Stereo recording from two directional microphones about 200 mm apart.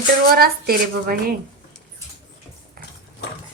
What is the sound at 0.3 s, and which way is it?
A woman's voice, 50° right (ahead or behind).